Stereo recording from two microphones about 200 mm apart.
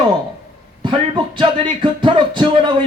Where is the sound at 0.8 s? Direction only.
25° right (ahead or behind).